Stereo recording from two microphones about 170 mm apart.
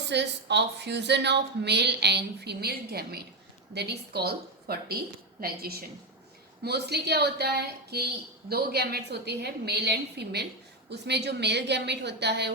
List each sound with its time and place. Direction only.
0.1 s a woman's voice: 90° right